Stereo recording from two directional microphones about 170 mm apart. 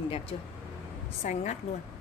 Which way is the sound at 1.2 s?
45° left (ahead or behind).